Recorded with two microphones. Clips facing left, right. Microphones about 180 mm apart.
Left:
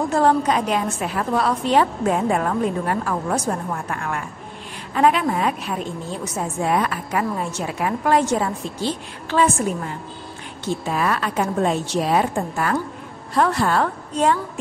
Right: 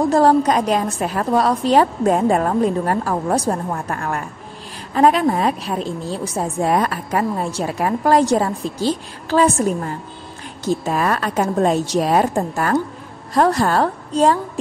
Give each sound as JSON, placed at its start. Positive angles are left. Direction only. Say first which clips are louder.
{"t": 0.1, "sound": "a woman's voice", "louder": "right 2 dB", "side_deg": -40}